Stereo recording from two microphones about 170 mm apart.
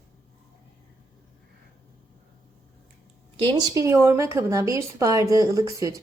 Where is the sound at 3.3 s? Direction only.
30° right (ahead or behind).